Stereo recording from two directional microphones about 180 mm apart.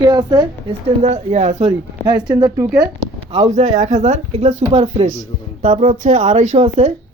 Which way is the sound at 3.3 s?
40° right (ahead or behind).